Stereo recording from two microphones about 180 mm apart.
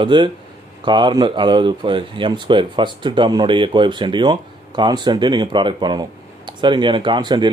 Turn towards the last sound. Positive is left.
turn(degrees=-25)  # may be behind; listen again after turning